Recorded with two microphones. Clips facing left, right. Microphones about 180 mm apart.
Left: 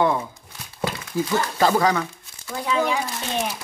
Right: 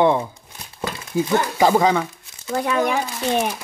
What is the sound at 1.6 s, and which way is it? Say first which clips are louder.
Crumpling: right 3 dB; 20° right (ahead or behind).